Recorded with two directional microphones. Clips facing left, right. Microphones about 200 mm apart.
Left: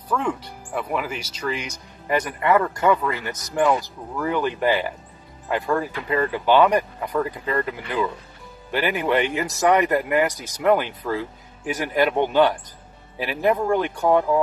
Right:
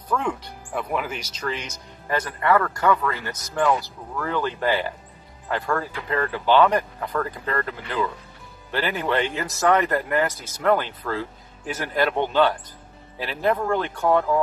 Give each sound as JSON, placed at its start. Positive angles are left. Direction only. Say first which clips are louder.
{"t": 0.1, "sound": "speech", "louder": "left 1 dB", "side_deg": 5}